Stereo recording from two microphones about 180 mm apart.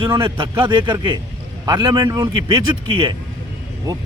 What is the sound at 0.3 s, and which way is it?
Speech, 25° right (ahead or behind).